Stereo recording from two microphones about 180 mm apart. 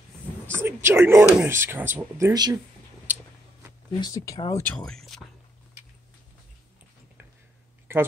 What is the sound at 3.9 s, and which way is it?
Speech, 20° left (ahead or behind).